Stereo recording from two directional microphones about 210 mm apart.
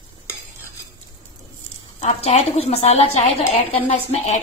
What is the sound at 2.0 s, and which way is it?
Speech, 30° left (ahead or behind).